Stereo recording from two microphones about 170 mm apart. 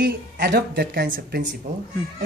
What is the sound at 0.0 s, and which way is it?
A man's voice, 65° right (ahead or behind).